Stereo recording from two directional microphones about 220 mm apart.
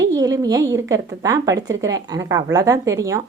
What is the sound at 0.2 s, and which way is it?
A woman's voice, 15° right (ahead or behind).